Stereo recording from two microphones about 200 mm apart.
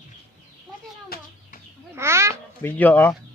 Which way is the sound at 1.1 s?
50° left (ahead or behind).